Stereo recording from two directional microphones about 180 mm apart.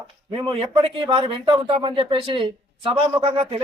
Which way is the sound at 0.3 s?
30° right (ahead or behind).